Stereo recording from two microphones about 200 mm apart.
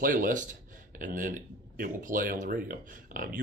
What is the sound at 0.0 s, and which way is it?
Speech, 40° right (ahead or behind).